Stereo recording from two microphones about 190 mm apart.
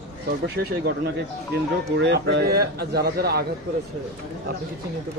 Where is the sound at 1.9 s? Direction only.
60° right (ahead or behind).